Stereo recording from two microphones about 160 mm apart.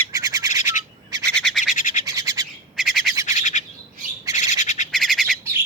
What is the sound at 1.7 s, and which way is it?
Bird, 55° left (ahead or behind).